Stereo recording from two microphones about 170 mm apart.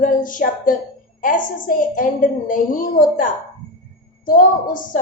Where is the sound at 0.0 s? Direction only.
50° left (ahead or behind).